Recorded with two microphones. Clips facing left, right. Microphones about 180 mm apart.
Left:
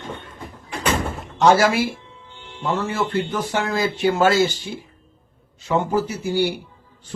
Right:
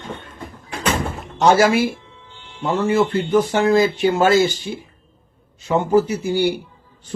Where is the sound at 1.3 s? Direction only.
20° right (ahead or behind).